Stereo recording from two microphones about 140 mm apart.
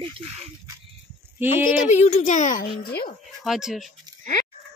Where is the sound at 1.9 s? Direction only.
55° left (ahead or behind).